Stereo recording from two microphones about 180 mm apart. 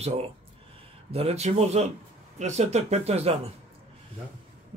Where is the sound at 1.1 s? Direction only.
35° right (ahead or behind).